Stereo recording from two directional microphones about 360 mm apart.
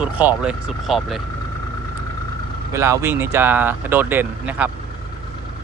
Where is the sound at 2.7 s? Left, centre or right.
Centre.